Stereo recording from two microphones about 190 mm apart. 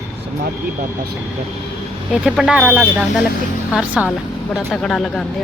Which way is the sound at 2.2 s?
5° right (ahead or behind).